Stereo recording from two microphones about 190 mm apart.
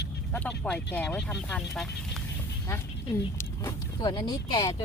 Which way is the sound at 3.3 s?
15° left (ahead or behind).